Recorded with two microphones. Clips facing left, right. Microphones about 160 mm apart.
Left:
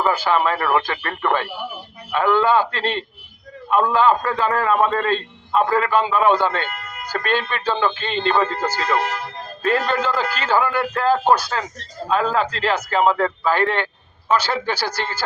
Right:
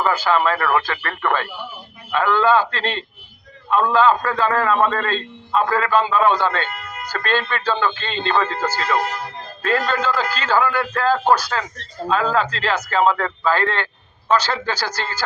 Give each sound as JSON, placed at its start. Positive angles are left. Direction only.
{"t": 0.0, "sound": "speech", "side_deg": 15}